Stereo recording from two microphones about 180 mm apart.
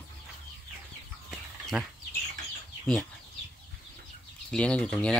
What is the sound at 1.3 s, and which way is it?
Chicken, 5° right (ahead or behind).